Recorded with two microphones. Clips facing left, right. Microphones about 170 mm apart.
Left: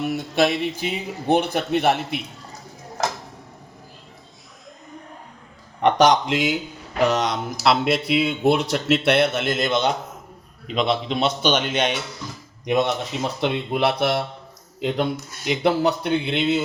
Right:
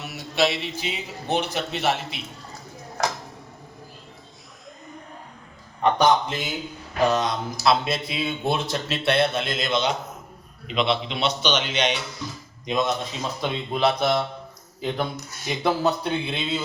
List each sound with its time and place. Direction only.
0.0 s a man's voice: 50° left (ahead or behind)
5.8 s a man's voice: 90° left; by 9.9 s 60° left (ahead or behind)
10.8 s speech: 45° left (ahead or behind)
12.6 s a man's voice: 65° left (ahead or behind)